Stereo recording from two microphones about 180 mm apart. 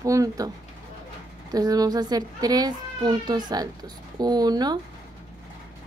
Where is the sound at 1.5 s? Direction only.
20° right (ahead or behind).